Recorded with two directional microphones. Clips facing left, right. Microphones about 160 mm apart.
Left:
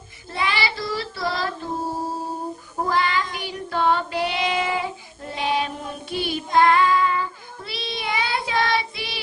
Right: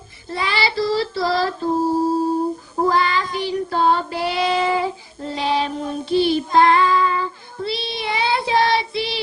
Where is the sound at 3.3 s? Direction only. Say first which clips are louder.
Right 6 dB; 30° right (ahead or behind).